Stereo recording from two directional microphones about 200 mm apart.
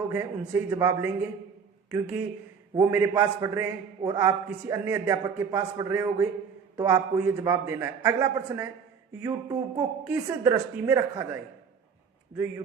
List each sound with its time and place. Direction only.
0.1 s a man's voice: 10° right (ahead or behind)
2.7 s a man's voice: 15° right (ahead or behind)